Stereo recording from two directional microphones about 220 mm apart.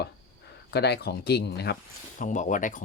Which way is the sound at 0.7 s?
50° left (ahead or behind).